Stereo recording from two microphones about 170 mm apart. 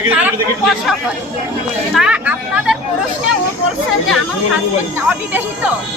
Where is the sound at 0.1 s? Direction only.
10° right (ahead or behind).